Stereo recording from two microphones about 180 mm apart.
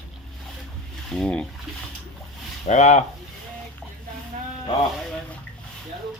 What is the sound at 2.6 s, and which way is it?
Speech, 40° left (ahead or behind).